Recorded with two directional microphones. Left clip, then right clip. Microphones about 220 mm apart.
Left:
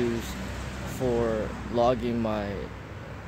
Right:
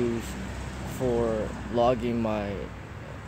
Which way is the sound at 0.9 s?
Centre (ahead or behind).